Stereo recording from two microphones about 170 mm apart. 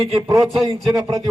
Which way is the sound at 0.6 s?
20° right (ahead or behind).